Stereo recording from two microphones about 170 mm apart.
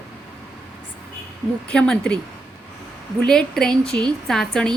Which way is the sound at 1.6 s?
5° left (ahead or behind).